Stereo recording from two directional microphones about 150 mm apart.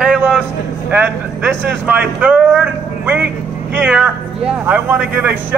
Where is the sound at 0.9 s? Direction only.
10° right (ahead or behind).